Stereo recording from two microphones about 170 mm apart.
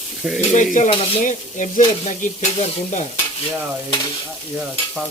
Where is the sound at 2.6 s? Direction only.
40° left (ahead or behind).